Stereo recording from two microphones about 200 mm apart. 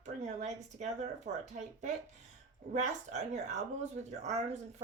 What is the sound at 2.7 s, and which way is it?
Speech, 35° right (ahead or behind).